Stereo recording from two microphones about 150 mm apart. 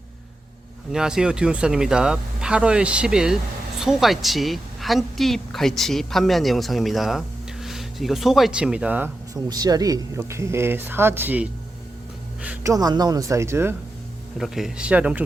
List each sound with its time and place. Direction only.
0.9 s a woman's voice: 5° right (ahead or behind)
9.3 s speech: 25° right (ahead or behind)
12.6 s speech: 25° right (ahead or behind)
14.3 s speech: centre (ahead or behind)